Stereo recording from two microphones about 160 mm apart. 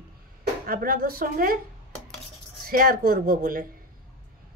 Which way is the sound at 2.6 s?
65° right (ahead or behind).